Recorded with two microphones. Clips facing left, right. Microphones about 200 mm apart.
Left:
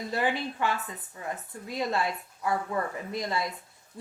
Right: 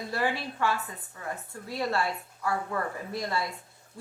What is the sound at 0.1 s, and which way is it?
A woman's voice, 20° left (ahead or behind).